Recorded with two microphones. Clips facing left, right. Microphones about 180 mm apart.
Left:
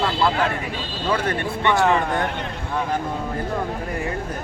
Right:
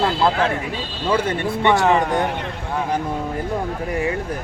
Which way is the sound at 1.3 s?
20° right (ahead or behind).